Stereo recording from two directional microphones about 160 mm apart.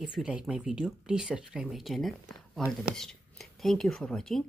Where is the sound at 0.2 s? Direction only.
5° right (ahead or behind).